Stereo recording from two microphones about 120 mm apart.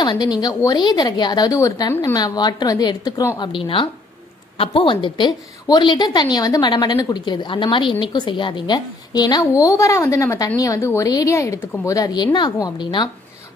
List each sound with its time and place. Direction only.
0.0 s a woman's voice: 35° left (ahead or behind)
3.3 s a woman's voice: 45° left (ahead or behind)